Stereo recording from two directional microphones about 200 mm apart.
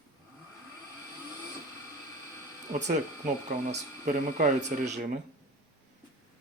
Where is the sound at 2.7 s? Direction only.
35° right (ahead or behind).